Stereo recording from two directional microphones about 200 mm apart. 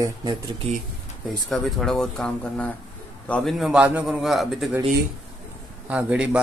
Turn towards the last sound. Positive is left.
turn(degrees=-5)  # may be behind; listen again after turning